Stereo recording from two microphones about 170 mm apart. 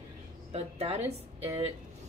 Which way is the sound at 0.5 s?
35° right (ahead or behind).